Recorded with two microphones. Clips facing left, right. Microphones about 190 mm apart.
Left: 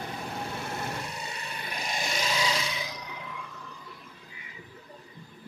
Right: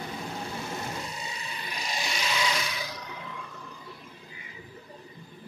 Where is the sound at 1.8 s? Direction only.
50° left (ahead or behind).